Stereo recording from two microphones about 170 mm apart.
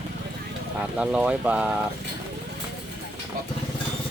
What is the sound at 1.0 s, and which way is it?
Speech, 5° right (ahead or behind).